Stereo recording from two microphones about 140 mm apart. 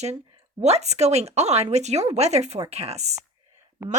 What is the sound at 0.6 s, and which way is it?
Speech, 50° right (ahead or behind).